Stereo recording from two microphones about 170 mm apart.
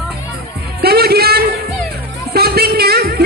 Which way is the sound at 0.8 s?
65° right (ahead or behind).